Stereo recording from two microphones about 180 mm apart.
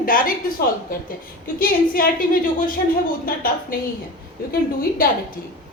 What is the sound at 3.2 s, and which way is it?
A woman's voice, 55° left (ahead or behind).